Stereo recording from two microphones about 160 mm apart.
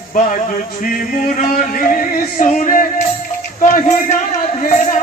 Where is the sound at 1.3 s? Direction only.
55° left (ahead or behind).